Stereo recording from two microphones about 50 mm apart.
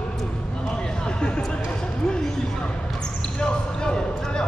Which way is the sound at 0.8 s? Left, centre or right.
Centre.